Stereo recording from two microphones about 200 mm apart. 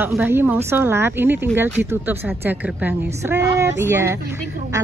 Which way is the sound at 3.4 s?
60° right (ahead or behind).